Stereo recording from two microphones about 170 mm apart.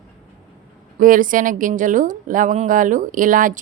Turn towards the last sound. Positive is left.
turn(degrees=-50)  # may be behind; listen again after turning